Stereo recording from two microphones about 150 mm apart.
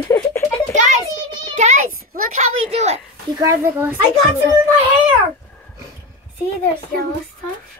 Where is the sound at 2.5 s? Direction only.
40° right (ahead or behind).